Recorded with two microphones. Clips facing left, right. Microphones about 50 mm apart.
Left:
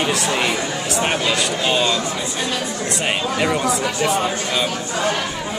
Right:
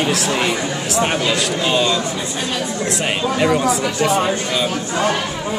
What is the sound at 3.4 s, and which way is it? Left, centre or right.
Speech, centre.